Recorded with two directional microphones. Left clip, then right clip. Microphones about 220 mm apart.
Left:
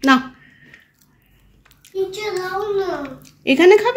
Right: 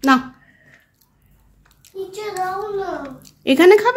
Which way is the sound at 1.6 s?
Centre (ahead or behind).